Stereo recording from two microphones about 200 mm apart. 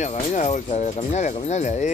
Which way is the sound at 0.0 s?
35° left (ahead or behind).